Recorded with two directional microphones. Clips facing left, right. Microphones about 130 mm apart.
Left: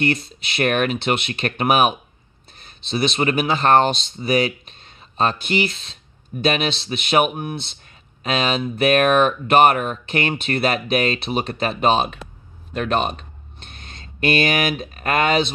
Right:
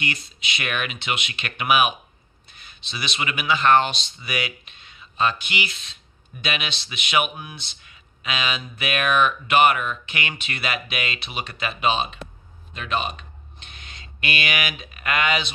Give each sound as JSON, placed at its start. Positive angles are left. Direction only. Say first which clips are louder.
{"t": 0.0, "sound": "speech", "louder": "left 9 dB", "side_deg": 40}